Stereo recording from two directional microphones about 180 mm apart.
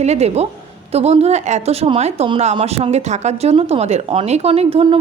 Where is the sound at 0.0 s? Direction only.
35° right (ahead or behind).